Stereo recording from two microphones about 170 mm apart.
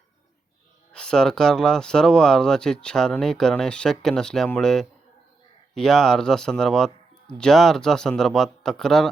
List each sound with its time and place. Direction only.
0.9 s speech: 5° left (ahead or behind)